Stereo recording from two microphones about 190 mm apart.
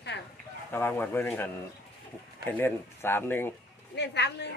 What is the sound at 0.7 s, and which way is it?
Speech, 10° left (ahead or behind).